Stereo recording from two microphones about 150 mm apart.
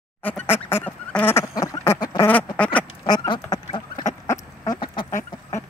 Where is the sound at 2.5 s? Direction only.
10° left (ahead or behind).